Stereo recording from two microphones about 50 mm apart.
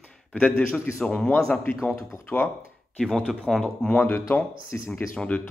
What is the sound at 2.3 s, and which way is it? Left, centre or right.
Speech, left.